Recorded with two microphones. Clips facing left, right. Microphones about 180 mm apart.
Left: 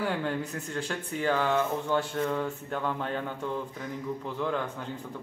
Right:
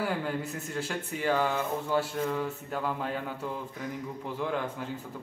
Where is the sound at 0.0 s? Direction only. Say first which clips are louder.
Left 1 dB; 5° right (ahead or behind).